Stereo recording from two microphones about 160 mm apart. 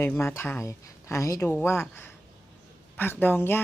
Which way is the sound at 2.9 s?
10° left (ahead or behind).